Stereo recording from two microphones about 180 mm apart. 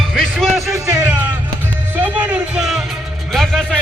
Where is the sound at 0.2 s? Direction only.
5° left (ahead or behind).